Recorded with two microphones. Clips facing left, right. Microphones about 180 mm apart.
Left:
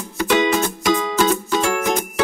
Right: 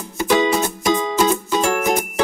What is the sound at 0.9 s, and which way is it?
Music, 15° right (ahead or behind).